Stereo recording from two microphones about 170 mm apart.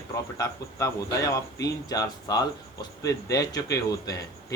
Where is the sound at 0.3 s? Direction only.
20° left (ahead or behind).